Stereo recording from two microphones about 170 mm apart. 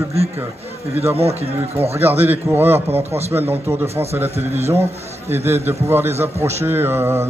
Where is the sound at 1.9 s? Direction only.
15° right (ahead or behind).